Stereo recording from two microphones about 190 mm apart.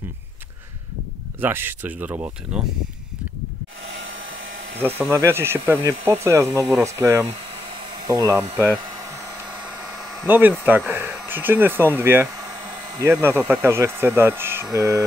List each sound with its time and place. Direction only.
1.4 s speech: 10° right (ahead or behind)
3.8 s hair dryer: 85° right
4.7 s speech: 10° right (ahead or behind)
8.5 s a sound: 15° right (ahead or behind)
10.2 s speech: 10° right (ahead or behind)
13.1 s speech: 10° right (ahead or behind)